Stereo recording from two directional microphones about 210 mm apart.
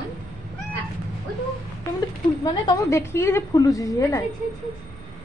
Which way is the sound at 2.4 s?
15° left (ahead or behind).